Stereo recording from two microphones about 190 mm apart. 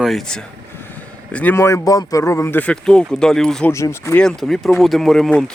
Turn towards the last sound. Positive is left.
turn(degrees=5)  # may be behind; listen again after turning